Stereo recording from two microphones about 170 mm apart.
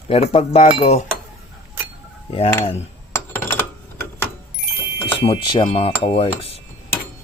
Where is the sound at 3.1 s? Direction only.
15° left (ahead or behind).